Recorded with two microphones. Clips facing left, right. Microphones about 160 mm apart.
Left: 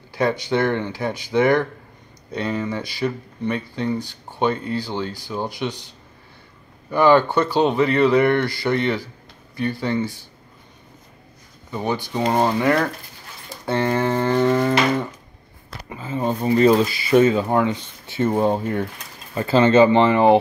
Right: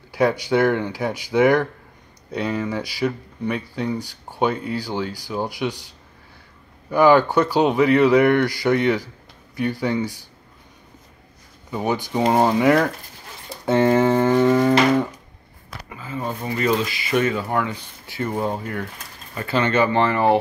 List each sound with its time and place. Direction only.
0.1 s speech: 10° right (ahead or behind)
6.9 s speech: 10° right (ahead or behind)
11.7 s speech: 10° right (ahead or behind)
15.9 s speech: 25° left (ahead or behind)